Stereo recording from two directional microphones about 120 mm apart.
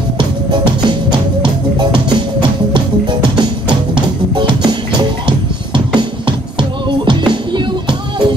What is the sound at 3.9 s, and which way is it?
Music, 40° right (ahead or behind).